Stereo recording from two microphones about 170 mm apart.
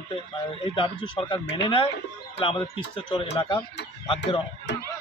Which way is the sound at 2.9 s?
25° left (ahead or behind).